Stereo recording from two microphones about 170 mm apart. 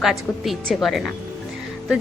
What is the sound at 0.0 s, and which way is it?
A woman's voice, centre (ahead or behind).